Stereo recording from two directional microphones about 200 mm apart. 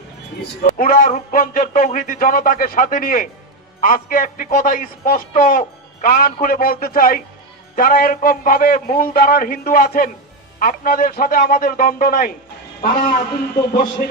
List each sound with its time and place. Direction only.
0.7 s a man's voice: 45° left (ahead or behind)